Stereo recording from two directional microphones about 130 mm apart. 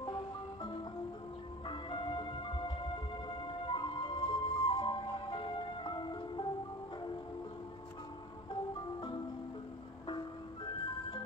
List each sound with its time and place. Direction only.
0.0 s marimba: 35° left (ahead or behind)
1.7 s music: 40° left (ahead or behind)
10.0 s music: 40° left (ahead or behind)